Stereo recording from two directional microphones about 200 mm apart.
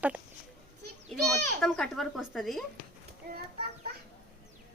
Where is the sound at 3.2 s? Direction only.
50° right (ahead or behind).